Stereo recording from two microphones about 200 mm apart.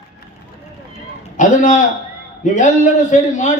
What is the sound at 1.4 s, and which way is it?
A man's voice, 40° left (ahead or behind).